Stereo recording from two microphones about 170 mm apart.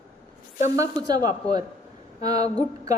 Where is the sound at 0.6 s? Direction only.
20° right (ahead or behind).